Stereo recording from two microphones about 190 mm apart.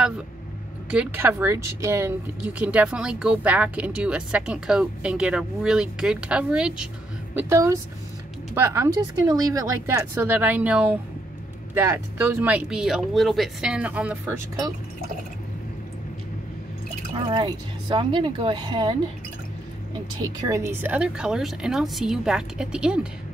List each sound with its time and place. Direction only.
0.8 s speech: 10° right (ahead or behind)
7.3 s speech: 15° right (ahead or behind)
17.3 s speech: 25° right (ahead or behind)
20.3 s speech: 15° right (ahead or behind)